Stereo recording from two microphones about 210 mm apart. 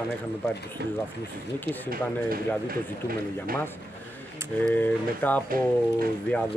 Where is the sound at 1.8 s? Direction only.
45° right (ahead or behind).